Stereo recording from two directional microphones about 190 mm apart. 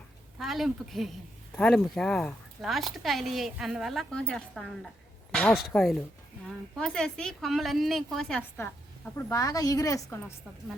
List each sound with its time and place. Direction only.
0.3 s a woman's voice: centre (ahead or behind); by 10.3 s 15° left (ahead or behind)